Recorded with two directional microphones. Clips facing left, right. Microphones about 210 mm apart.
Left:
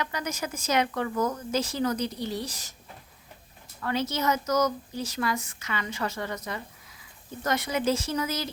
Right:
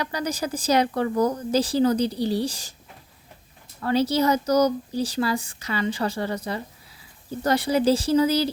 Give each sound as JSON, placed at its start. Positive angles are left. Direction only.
{"t": 0.0, "sound": "a woman's voice", "side_deg": -35}
{"t": 3.8, "sound": "a woman's voice", "side_deg": -35}